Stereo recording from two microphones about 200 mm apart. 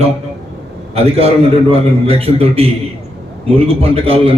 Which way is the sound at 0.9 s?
30° right (ahead or behind).